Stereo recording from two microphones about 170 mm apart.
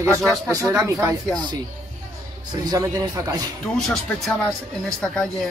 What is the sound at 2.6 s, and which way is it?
Speech, 20° right (ahead or behind).